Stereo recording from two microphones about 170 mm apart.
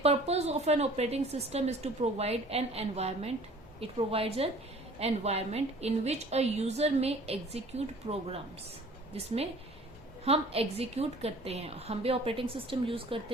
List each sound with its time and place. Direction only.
0.0 s a woman's voice: 40° right (ahead or behind)